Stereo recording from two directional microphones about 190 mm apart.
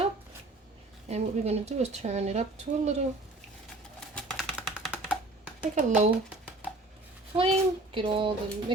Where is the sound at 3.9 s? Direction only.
5° left (ahead or behind).